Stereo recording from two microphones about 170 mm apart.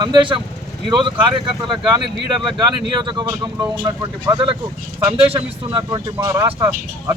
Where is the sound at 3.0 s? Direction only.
25° right (ahead or behind).